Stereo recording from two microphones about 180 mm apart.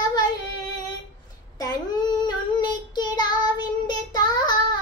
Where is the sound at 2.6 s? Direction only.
25° left (ahead or behind).